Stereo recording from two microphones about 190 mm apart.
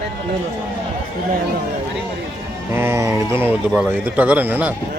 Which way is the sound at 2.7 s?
15° right (ahead or behind).